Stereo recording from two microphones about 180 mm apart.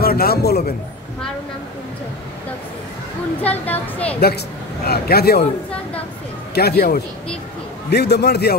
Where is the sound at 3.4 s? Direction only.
10° left (ahead or behind).